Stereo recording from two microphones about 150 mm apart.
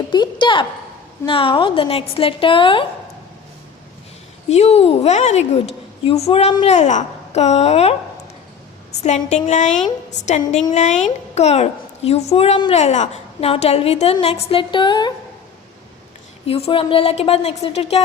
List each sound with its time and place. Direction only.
0.1 s a sound: 30° left (ahead or behind)
1.3 s a woman's voice: 35° left (ahead or behind)
4.4 s a woman's voice: 45° left (ahead or behind)
9.0 s a woman's voice: 50° left (ahead or behind)
12.7 s a woman's voice: 50° left (ahead or behind); by 15.1 s 30° left (ahead or behind)
16.5 s a woman's voice: 40° left (ahead or behind)